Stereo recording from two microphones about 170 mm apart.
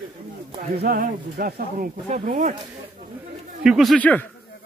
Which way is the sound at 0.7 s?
65° right (ahead or behind).